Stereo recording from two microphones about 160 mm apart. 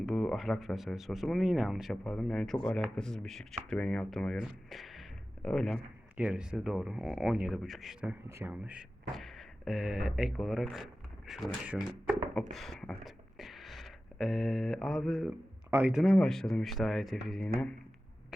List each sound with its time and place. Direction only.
0.0 s speech: centre (ahead or behind)
6.1 s speech: 10° right (ahead or behind)
8.3 s a man's voice: 15° right (ahead or behind)
9.1 s a man's voice: centre (ahead or behind)